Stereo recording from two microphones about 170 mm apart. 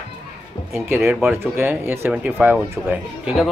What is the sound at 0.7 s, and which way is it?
Speech, 15° right (ahead or behind).